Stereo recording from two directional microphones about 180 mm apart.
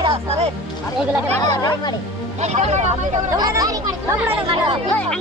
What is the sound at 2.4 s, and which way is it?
Speech, 40° right (ahead or behind).